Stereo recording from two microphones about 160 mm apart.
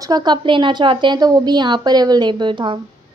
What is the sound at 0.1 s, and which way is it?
A woman's voice, 25° right (ahead or behind).